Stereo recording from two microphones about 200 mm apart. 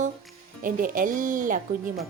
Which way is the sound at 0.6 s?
40° right (ahead or behind).